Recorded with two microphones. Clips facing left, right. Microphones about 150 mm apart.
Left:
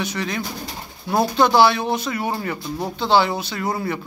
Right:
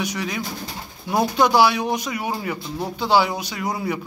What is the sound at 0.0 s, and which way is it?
Speech, 10° right (ahead or behind).